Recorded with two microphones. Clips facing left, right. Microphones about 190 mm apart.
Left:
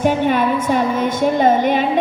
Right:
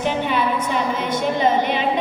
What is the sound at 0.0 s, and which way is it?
Music, 50° left (ahead or behind).